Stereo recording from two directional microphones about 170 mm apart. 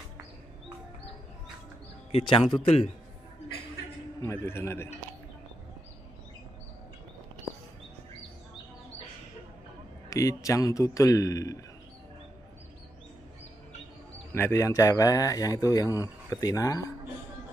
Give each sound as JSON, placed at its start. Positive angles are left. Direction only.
{"t": 2.1, "sound": "a man's voice", "side_deg": 35}
{"t": 4.2, "sound": "a man's voice", "side_deg": 15}
{"t": 10.0, "sound": "speech", "side_deg": 20}
{"t": 14.3, "sound": "speech", "side_deg": 15}